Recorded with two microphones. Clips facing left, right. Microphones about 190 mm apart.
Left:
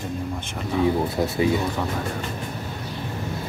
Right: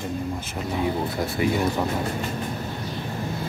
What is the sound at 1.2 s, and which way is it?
Speech, 20° left (ahead or behind).